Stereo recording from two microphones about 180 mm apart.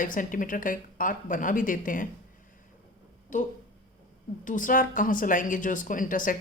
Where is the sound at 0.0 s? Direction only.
50° left (ahead or behind).